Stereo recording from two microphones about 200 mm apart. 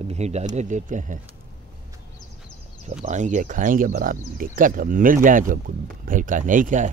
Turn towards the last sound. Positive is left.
turn(degrees=-40)  # may be behind; listen again after turning